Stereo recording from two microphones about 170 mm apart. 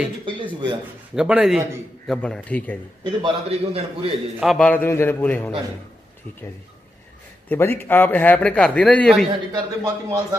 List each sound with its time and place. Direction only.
0.2 s a sound: 30° right (ahead or behind)
1.1 s a man's voice: 5° right (ahead or behind)
3.0 s a man's voice: 30° right (ahead or behind)
4.4 s a man's voice: centre (ahead or behind)
7.4 s a man's voice: 15° left (ahead or behind)
9.5 s speech: 20° right (ahead or behind)